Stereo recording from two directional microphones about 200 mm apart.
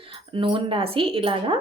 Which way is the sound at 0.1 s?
25° right (ahead or behind).